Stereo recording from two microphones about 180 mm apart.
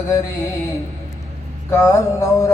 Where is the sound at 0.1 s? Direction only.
15° left (ahead or behind).